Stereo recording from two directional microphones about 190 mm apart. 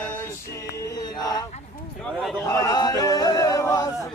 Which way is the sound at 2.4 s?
15° left (ahead or behind).